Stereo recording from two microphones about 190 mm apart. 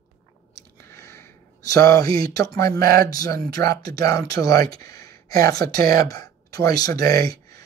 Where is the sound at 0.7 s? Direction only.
15° left (ahead or behind).